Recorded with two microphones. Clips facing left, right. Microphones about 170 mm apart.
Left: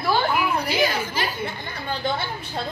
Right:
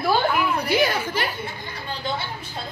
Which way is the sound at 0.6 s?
60° right (ahead or behind).